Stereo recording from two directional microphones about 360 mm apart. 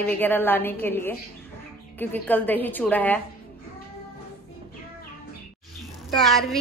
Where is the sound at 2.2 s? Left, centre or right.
Centre.